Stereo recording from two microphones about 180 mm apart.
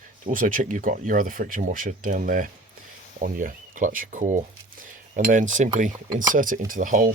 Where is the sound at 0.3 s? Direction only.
50° right (ahead or behind).